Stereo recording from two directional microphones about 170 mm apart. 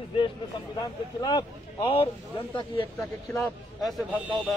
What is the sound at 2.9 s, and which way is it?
Speech, 15° left (ahead or behind).